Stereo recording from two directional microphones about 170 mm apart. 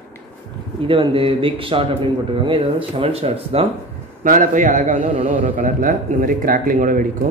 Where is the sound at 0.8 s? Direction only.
30° right (ahead or behind).